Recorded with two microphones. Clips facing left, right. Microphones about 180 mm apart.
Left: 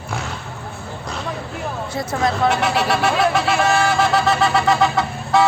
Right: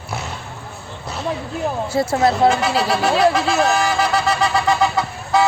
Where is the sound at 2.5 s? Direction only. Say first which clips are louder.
Right 1 dB; centre (ahead or behind).